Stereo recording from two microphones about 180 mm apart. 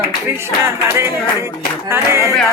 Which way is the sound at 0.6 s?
15° right (ahead or behind).